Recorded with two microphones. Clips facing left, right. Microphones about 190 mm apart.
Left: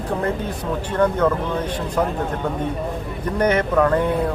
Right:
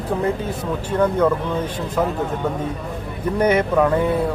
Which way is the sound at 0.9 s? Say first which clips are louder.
Right 1 dB; 10° right (ahead or behind).